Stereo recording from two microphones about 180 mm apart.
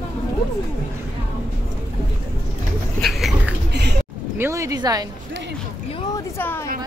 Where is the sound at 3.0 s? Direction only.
Centre (ahead or behind).